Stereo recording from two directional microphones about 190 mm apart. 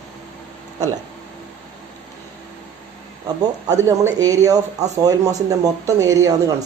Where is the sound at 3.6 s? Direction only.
15° right (ahead or behind).